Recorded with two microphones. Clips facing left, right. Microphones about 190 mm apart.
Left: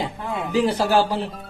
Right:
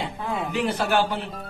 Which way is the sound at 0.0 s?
35° left (ahead or behind).